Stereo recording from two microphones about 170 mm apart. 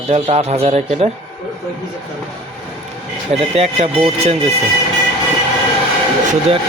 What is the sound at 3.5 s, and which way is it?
Speech, 40° right (ahead or behind).